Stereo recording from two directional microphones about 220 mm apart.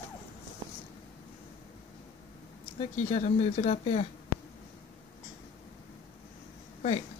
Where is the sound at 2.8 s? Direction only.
30° left (ahead or behind).